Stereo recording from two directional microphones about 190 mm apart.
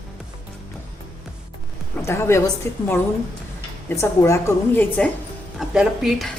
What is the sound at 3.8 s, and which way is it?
A woman's voice, 15° left (ahead or behind).